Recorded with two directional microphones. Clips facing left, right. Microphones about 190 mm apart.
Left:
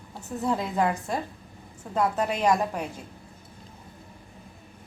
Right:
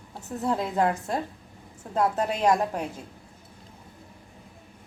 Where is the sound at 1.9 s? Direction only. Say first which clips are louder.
Right 1 dB; 35° right (ahead or behind).